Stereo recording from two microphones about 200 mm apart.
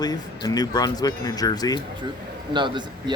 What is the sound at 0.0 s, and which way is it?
Speech, 20° left (ahead or behind).